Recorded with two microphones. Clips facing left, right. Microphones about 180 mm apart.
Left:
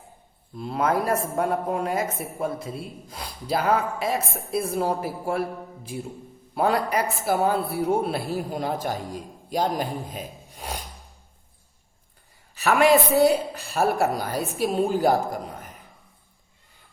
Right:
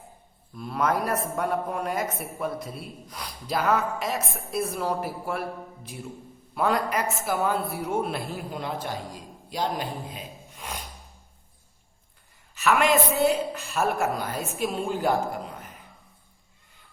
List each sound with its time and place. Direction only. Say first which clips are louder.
0.5 s a woman's voice: left 2 dB; 25° left (ahead or behind)
6.5 s a woman's voice: left 2 dB; 30° left (ahead or behind)
12.5 s a woman's voice: left 3 dB; 35° left (ahead or behind)